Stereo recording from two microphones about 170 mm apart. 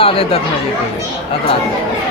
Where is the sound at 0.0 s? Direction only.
35° left (ahead or behind).